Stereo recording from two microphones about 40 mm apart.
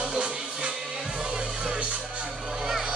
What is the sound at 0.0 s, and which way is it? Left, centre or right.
Music, right.